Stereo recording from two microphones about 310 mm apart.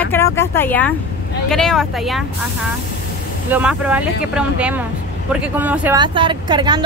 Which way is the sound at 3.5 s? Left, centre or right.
Centre.